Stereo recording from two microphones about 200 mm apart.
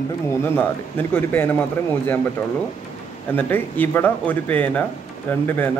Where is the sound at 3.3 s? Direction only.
10° left (ahead or behind).